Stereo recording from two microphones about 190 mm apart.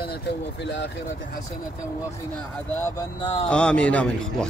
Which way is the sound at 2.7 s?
15° left (ahead or behind).